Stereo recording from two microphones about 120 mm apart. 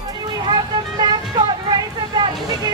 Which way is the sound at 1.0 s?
35° right (ahead or behind).